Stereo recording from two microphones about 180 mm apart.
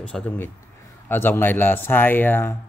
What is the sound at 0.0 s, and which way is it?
A man's voice, 5° left (ahead or behind).